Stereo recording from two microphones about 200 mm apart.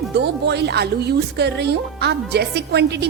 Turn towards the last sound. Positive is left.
turn(degrees=-60)  # may be behind; listen again after turning